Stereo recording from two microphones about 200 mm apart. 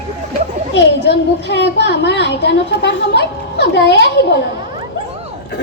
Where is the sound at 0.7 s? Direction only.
60° left (ahead or behind).